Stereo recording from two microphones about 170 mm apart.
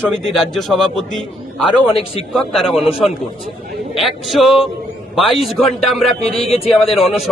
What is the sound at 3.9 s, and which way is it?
Speech, centre (ahead or behind).